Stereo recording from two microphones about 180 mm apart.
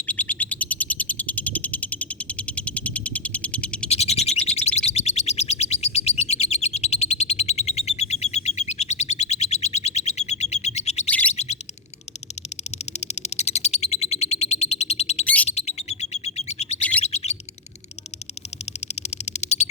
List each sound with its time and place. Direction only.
0.1 s bird: 10° left (ahead or behind)
2.5 s frog: 5° left (ahead or behind)
3.8 s bird: 35° left (ahead or behind)
12.8 s a sound: 35° left (ahead or behind)
13.8 s frog: 40° left (ahead or behind)
15.2 s bird: 10° left (ahead or behind)
15.4 s bird: 35° left (ahead or behind)
19.2 s a sound: 40° left (ahead or behind)